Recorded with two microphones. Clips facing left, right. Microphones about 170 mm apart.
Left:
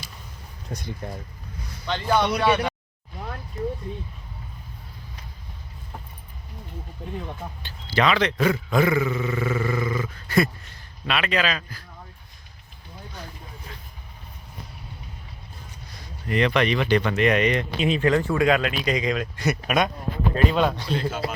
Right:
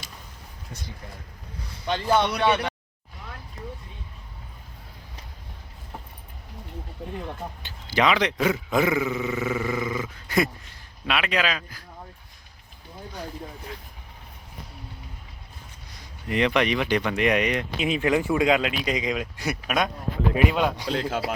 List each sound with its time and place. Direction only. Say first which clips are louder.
0.7 s speech: left 6 dB; 45° left (ahead or behind)
1.9 s speech: even; 10° right (ahead or behind)
2.4 s speech: left 1 dB; 5° left (ahead or behind)
7.6 s speech: even; 15° right (ahead or behind)
16.3 s speech: left 1 dB; 15° right (ahead or behind); by 19.9 s centre (ahead or behind)
20.3 s speech: left 2 dB; 10° right (ahead or behind)
20.8 s speech: even; 90° right